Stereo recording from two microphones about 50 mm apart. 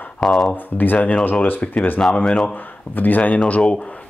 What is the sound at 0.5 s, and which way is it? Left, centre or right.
Speech, left.